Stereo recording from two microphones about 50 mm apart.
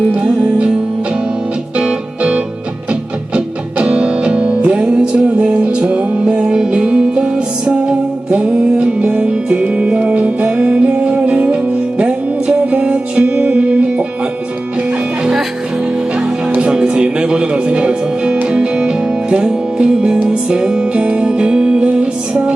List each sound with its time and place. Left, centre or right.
1.8 s music: centre
15.2 s music: centre
16.6 s music: centre